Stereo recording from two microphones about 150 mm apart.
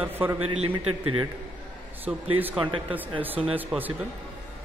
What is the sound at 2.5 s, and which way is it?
Speech, 35° right (ahead or behind).